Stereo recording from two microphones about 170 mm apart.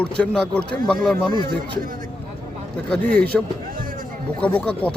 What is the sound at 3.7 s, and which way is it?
Music, 55° right (ahead or behind).